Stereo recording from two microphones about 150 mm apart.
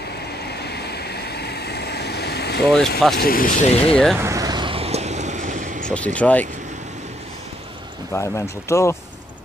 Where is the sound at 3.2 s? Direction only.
75° left (ahead or behind).